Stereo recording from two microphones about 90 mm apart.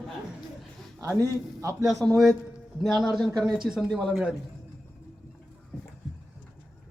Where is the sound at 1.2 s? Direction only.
35° right (ahead or behind).